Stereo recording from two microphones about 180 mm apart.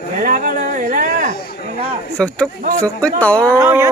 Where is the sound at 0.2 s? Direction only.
50° right (ahead or behind).